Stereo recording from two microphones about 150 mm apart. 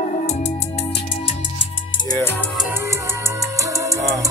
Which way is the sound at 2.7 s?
15° right (ahead or behind).